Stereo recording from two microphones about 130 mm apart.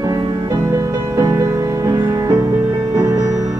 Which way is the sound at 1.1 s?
25° right (ahead or behind).